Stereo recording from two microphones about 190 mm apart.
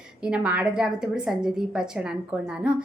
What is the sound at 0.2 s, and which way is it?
A woman's voice, 5° right (ahead or behind).